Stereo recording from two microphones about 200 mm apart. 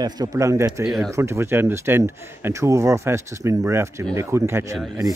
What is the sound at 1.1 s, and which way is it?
Speech, 15° right (ahead or behind).